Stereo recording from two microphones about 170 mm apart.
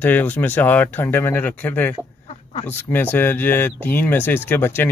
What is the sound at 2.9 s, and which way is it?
Speech, 10° left (ahead or behind).